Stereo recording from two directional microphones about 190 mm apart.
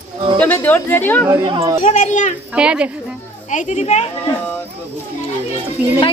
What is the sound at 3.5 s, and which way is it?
Speech, 40° left (ahead or behind).